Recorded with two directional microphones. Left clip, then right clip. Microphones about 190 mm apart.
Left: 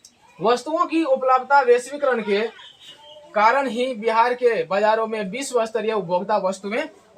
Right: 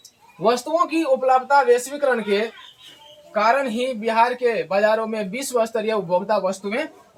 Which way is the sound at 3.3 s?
30° left (ahead or behind).